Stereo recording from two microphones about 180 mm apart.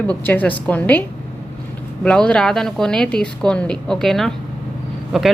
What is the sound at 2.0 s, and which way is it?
Speech, 5° left (ahead or behind).